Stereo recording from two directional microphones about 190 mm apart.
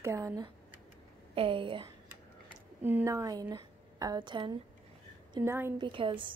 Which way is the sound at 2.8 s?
15° right (ahead or behind).